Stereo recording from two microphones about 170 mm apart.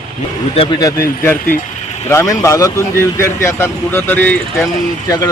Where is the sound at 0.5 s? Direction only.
30° left (ahead or behind).